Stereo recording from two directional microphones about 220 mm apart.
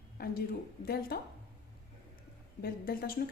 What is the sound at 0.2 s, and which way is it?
A woman's voice, 45° left (ahead or behind).